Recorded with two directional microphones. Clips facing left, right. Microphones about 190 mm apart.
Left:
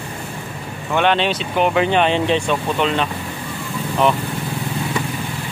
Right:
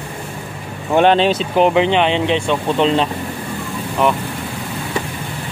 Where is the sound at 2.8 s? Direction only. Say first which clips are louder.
Right 6 dB; 30° right (ahead or behind).